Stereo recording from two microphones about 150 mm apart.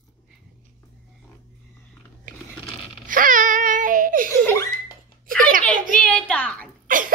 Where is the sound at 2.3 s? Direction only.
60° right (ahead or behind).